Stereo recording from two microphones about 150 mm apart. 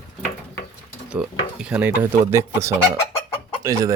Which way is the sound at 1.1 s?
5° right (ahead or behind).